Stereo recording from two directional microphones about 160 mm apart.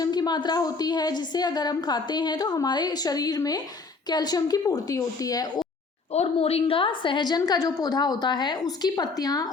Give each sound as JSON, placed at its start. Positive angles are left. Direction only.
{"t": 0.0, "sound": "a woman's voice", "side_deg": 25}
{"t": 6.1, "sound": "a woman's voice", "side_deg": 40}